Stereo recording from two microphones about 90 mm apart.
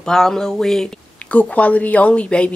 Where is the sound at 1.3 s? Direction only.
15° left (ahead or behind).